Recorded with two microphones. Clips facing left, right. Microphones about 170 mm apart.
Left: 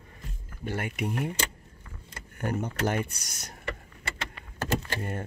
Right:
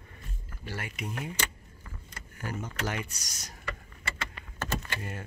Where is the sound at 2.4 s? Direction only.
60° left (ahead or behind).